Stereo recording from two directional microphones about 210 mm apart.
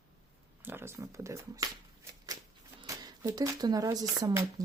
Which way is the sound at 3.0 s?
20° right (ahead or behind).